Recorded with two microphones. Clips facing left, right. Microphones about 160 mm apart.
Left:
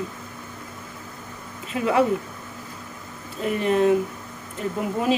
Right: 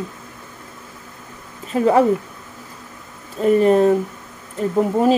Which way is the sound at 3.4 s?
40° right (ahead or behind).